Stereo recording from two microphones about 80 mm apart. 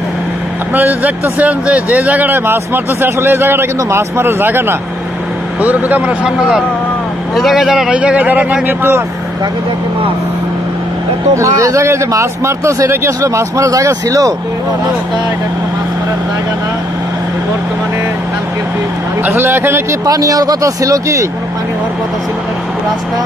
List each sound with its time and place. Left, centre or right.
0.7 s a man's voice: right
11.3 s speech: right
19.2 s speech: right
20.1 s speech: right